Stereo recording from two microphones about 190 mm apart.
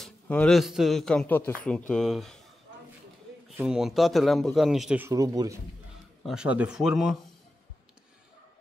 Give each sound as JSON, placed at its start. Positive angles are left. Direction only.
{"t": 0.0, "sound": "a man's voice", "side_deg": 5}
{"t": 3.4, "sound": "a man's voice", "side_deg": -5}
{"t": 5.1, "sound": "speech", "side_deg": -20}
{"t": 6.2, "sound": "a man's voice", "side_deg": -5}